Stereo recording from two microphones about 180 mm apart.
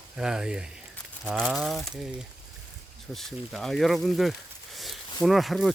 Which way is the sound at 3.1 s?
Centre (ahead or behind).